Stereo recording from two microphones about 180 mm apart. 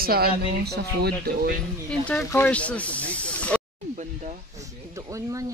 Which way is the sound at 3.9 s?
40° right (ahead or behind).